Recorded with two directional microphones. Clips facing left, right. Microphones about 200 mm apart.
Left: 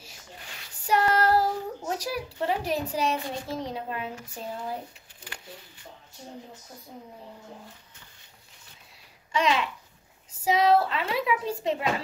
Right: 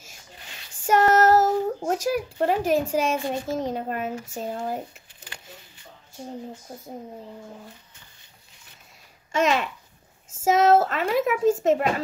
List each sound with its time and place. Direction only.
0.8 s child singing: 45° right (ahead or behind)
1.9 s a woman's voice: 50° right (ahead or behind)
9.3 s a woman's voice: 45° right (ahead or behind)